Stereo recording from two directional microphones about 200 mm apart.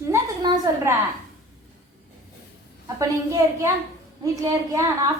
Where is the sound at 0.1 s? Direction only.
15° right (ahead or behind).